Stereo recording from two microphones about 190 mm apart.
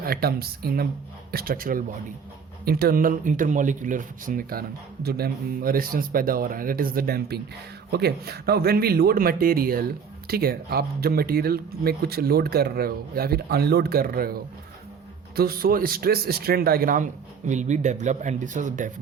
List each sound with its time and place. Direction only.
0.0 s speech: 55° right (ahead or behind)